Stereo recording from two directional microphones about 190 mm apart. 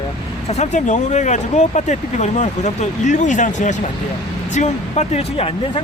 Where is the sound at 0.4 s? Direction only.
35° left (ahead or behind).